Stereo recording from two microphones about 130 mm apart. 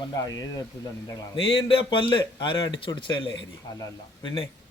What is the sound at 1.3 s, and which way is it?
Speech, 45° left (ahead or behind).